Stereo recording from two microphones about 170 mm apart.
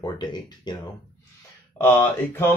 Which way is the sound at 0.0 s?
25° left (ahead or behind).